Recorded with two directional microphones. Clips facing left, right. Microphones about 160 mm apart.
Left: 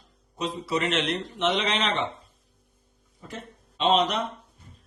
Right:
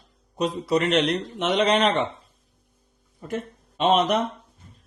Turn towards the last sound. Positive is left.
turn(degrees=-45)  # may be behind; listen again after turning